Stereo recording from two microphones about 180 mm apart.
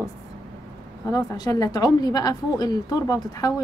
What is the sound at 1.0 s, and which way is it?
A woman's voice, 20° left (ahead or behind).